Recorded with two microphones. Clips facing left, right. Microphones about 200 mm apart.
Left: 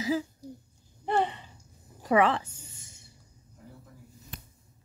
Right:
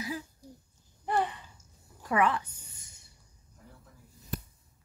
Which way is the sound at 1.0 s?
25° left (ahead or behind).